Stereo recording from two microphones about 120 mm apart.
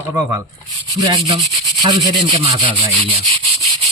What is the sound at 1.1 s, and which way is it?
Rub, 50° right (ahead or behind).